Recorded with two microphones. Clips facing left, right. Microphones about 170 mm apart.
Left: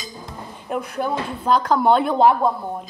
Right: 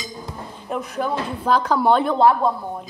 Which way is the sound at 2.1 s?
15° left (ahead or behind).